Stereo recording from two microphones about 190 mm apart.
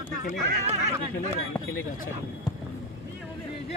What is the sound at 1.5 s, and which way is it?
Speech, 10° left (ahead or behind).